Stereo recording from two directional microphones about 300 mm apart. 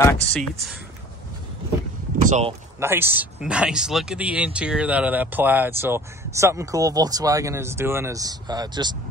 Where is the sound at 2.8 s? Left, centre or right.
Centre.